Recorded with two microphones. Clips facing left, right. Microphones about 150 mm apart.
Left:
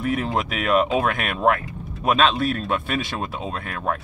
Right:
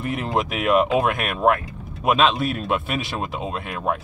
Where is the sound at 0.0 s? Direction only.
Centre (ahead or behind).